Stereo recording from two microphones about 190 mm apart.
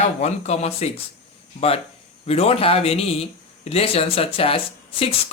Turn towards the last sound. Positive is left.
turn(degrees=30)  # may be behind; listen again after turning